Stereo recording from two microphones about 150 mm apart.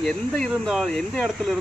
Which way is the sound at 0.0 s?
Centre (ahead or behind).